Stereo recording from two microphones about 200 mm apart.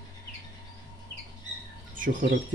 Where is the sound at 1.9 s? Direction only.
40° right (ahead or behind).